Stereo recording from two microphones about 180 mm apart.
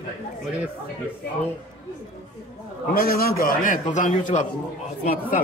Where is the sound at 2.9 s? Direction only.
55° left (ahead or behind).